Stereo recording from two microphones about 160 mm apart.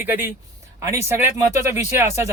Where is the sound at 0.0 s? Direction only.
15° right (ahead or behind).